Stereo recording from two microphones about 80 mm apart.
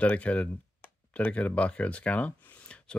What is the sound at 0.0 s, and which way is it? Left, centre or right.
Speech, centre.